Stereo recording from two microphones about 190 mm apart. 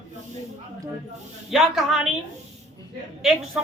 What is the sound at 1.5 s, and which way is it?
Speech, centre (ahead or behind).